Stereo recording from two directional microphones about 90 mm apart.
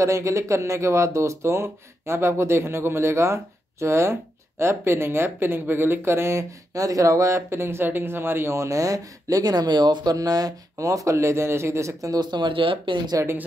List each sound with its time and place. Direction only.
0.0 s speech: 35° right (ahead or behind); by 13.1 s 65° right (ahead or behind)